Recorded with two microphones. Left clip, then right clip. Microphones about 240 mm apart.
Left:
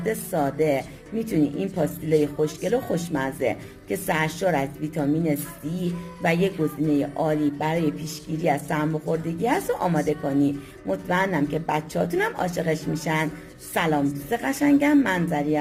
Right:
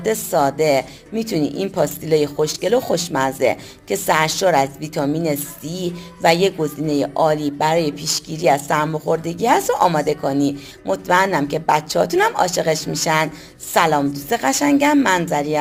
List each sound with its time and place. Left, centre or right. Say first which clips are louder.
0.0 s speech: right 8 dB; centre
6.9 s speech: right 10 dB; centre